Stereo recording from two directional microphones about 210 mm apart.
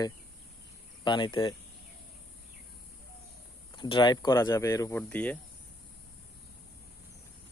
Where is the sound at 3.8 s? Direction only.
20° left (ahead or behind); by 5.4 s 5° left (ahead or behind).